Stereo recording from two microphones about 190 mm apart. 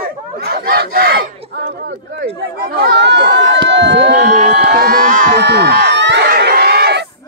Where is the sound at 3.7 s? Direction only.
65° right (ahead or behind).